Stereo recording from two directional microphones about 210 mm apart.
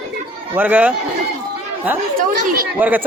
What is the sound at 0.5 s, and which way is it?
Speech, 10° right (ahead or behind).